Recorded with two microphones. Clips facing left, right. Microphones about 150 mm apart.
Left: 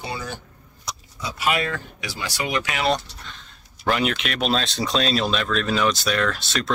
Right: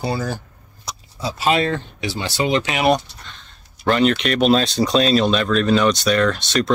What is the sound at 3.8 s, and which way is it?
Speech, 5° left (ahead or behind).